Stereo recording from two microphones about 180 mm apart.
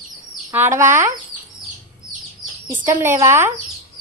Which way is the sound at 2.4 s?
10° right (ahead or behind).